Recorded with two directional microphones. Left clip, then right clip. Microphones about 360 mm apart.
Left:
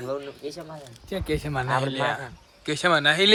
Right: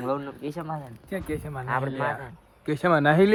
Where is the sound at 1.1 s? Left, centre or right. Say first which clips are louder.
Left 4 dB; left.